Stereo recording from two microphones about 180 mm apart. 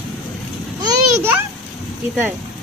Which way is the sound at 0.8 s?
10° right (ahead or behind).